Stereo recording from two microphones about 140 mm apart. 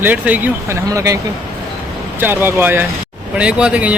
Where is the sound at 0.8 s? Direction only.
25° right (ahead or behind).